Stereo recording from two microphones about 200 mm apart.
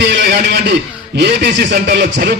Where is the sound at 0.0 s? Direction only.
60° right (ahead or behind).